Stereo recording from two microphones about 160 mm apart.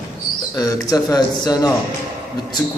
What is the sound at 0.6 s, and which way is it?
Speech, 25° left (ahead or behind).